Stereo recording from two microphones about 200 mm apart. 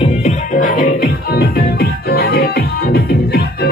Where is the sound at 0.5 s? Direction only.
45° left (ahead or behind).